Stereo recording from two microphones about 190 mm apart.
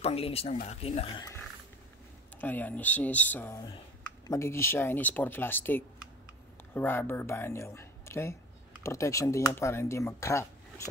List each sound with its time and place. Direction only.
0.0 s speech: 30° left (ahead or behind)
2.4 s speech: 10° left (ahead or behind)